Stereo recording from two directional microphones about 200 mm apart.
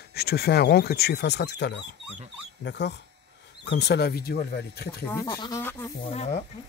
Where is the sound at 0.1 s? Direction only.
50° left (ahead or behind).